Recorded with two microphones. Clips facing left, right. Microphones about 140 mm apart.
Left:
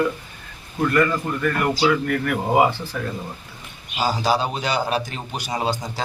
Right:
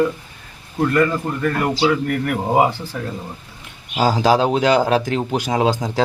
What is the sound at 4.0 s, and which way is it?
A man's voice, 90° right.